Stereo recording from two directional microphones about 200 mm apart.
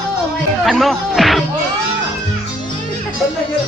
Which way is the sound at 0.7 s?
Centre (ahead or behind).